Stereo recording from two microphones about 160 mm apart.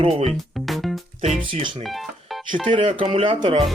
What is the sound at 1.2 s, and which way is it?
Speech, 35° right (ahead or behind).